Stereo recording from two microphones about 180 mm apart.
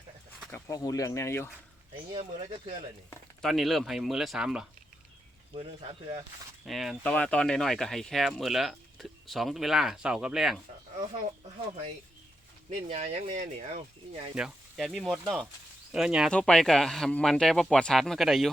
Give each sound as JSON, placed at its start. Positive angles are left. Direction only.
{"t": 0.5, "sound": "speech", "side_deg": 20}
{"t": 2.1, "sound": "speech", "side_deg": -30}
{"t": 3.4, "sound": "speech", "side_deg": 0}
{"t": 5.5, "sound": "speech", "side_deg": -30}
{"t": 6.7, "sound": "speech", "side_deg": 0}
{"t": 12.9, "sound": "speech", "side_deg": -40}
{"t": 14.3, "sound": "speech", "side_deg": 0}